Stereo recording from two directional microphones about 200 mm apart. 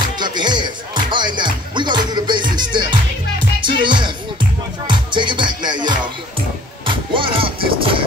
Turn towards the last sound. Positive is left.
turn(degrees=-25)  # may be behind; listen again after turning